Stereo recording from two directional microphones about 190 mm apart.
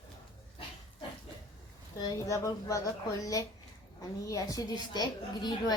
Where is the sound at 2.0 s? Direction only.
20° left (ahead or behind).